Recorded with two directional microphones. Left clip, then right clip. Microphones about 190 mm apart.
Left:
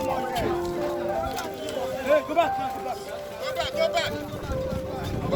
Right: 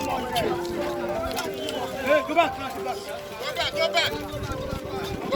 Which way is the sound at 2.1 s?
50° left (ahead or behind).